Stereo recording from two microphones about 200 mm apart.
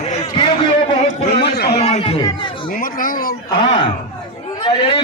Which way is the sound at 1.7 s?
30° left (ahead or behind).